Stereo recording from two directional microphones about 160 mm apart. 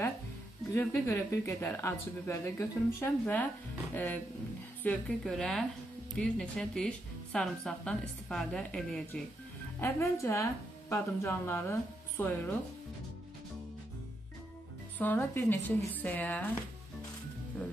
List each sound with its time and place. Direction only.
0.7 s a woman's voice: 15° left (ahead or behind)
15.0 s speech: 10° left (ahead or behind)